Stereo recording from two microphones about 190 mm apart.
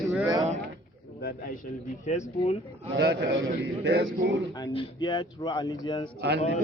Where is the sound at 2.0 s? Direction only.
35° left (ahead or behind).